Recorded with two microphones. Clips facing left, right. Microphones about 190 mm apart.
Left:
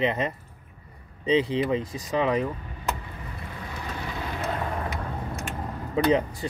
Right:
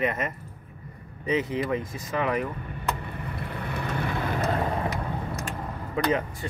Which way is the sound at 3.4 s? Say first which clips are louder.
Right 5 dB; 60° right (ahead or behind).